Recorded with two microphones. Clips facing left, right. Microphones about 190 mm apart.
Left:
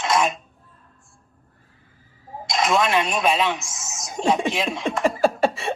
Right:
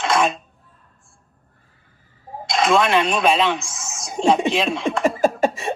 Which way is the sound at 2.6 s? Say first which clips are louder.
Right 3 dB; 30° right (ahead or behind).